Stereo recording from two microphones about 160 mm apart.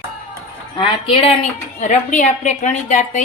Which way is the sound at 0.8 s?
35° left (ahead or behind).